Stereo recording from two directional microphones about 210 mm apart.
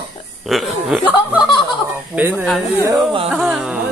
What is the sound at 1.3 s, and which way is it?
Speech, 20° left (ahead or behind).